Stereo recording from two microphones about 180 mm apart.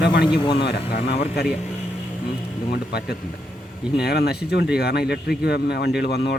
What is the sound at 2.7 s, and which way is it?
A man's voice, 60° left (ahead or behind).